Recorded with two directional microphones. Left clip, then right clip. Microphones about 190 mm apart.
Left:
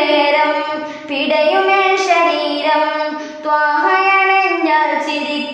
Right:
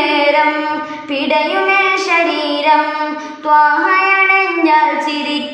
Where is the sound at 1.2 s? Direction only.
15° left (ahead or behind).